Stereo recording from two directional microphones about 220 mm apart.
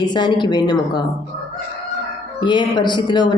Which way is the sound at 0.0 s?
20° left (ahead or behind).